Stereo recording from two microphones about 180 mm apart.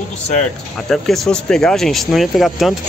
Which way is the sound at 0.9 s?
Centre (ahead or behind).